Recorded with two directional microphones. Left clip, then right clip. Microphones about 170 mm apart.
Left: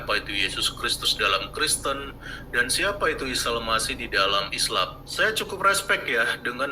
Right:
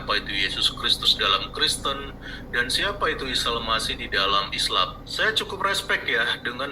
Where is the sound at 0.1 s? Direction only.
25° left (ahead or behind).